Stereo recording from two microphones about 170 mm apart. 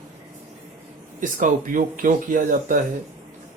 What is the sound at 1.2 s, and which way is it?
Speech, 50° right (ahead or behind).